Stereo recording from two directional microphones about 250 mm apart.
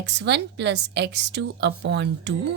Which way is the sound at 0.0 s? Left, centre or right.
Right.